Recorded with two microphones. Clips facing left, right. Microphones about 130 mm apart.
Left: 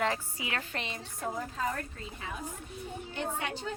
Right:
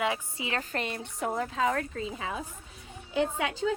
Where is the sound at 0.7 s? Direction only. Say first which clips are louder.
Right 5 dB; 50° right (ahead or behind); by 1.9 s 90° right.